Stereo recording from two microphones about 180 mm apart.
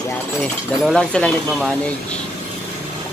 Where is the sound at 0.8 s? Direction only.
5° left (ahead or behind).